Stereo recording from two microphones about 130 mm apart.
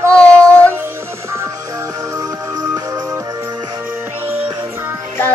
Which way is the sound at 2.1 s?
25° right (ahead or behind).